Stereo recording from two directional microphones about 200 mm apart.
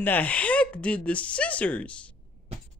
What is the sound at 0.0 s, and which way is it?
Speech, 10° left (ahead or behind).